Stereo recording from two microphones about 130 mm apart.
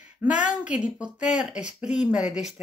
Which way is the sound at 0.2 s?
10° right (ahead or behind).